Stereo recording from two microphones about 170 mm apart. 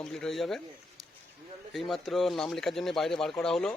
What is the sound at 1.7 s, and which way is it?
Speech, centre (ahead or behind).